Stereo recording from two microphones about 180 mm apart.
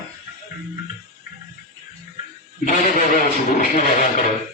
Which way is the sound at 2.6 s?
45° left (ahead or behind).